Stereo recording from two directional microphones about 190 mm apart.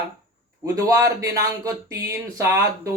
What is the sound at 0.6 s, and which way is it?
Speech, 15° right (ahead or behind).